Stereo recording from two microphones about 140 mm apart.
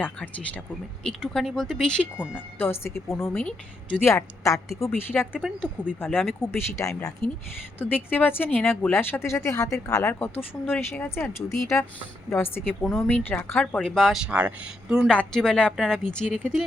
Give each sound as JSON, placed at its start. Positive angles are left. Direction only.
{"t": 0.0, "sound": "speech", "side_deg": 10}
{"t": 2.6, "sound": "a woman's voice", "side_deg": 15}
{"t": 12.8, "sound": "speech", "side_deg": 0}
{"t": 13.1, "sound": "speech", "side_deg": 10}
{"t": 14.3, "sound": "speech", "side_deg": -10}
{"t": 15.1, "sound": "speech", "side_deg": 5}